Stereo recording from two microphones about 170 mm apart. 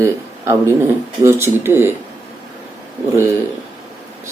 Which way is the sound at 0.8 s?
15° right (ahead or behind).